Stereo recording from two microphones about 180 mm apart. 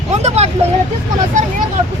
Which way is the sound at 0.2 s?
35° right (ahead or behind).